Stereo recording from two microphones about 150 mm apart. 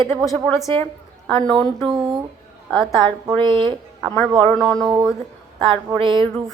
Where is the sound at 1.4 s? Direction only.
30° right (ahead or behind).